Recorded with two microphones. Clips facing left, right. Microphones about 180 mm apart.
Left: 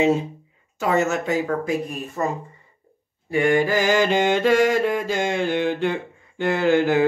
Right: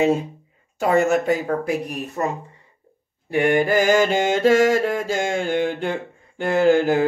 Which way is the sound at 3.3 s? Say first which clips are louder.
Right 1 dB; 65° right (ahead or behind).